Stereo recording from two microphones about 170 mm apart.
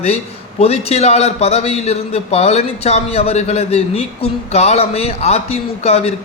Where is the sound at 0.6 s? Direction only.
40° left (ahead or behind).